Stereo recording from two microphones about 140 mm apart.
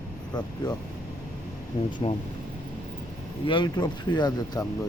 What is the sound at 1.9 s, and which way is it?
Speech, 35° left (ahead or behind).